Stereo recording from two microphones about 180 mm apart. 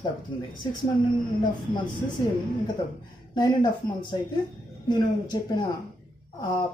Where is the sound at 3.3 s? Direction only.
25° left (ahead or behind).